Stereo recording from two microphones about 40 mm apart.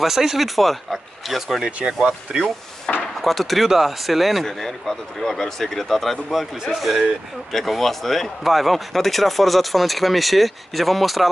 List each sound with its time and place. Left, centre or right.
0.0 s speech: centre
2.3 s speech: right
3.0 s a sound: centre
3.6 s speech: centre
4.5 s speech: centre